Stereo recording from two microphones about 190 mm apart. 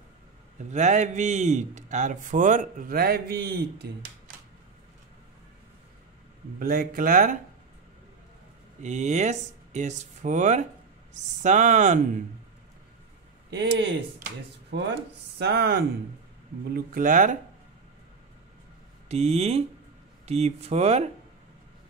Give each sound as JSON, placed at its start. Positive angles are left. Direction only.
{"t": 0.6, "sound": "a man's voice", "side_deg": -40}
{"t": 6.6, "sound": "speech", "side_deg": -50}
{"t": 8.8, "sound": "a man's voice", "side_deg": -40}
{"t": 13.5, "sound": "speech", "side_deg": -65}
{"t": 16.7, "sound": "speech", "side_deg": -45}
{"t": 19.0, "sound": "a man's voice", "side_deg": -35}